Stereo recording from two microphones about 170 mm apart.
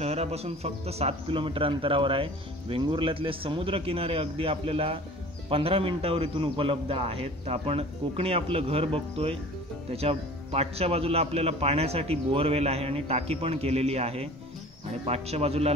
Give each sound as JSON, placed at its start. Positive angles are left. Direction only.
{"t": 0.0, "sound": "a man's voice", "side_deg": -40}